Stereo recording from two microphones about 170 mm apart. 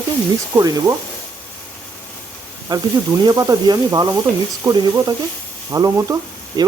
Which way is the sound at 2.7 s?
25° right (ahead or behind).